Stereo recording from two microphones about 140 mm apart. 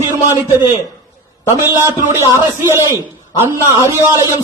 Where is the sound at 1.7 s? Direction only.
20° right (ahead or behind).